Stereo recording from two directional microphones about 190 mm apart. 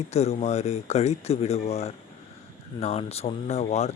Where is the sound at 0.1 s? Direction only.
35° left (ahead or behind).